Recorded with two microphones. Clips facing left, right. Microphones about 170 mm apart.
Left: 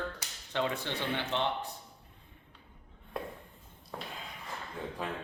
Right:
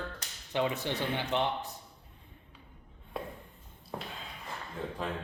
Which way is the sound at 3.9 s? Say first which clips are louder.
Right 2 dB; 15° right (ahead or behind).